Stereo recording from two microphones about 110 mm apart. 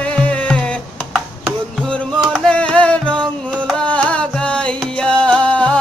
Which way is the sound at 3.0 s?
45° right (ahead or behind).